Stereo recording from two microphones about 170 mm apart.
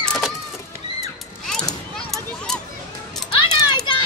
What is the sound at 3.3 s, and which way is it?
Children playing, 25° left (ahead or behind).